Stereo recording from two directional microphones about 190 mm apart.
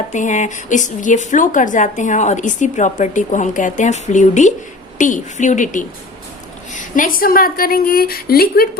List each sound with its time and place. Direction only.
0.1 s a woman's voice: 40° left (ahead or behind)